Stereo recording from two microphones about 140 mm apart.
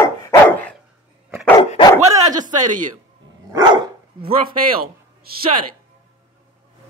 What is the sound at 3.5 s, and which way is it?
Dog, 30° right (ahead or behind).